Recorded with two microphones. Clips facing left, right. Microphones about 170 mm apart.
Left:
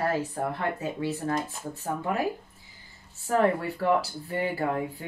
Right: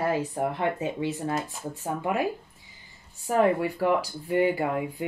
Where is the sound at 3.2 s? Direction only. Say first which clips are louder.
Right 2 dB; 15° right (ahead or behind).